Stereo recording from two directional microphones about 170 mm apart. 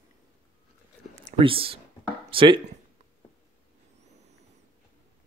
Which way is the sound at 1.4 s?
30° right (ahead or behind).